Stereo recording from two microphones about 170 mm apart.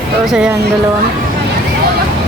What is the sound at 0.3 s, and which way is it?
Speech, 5° right (ahead or behind).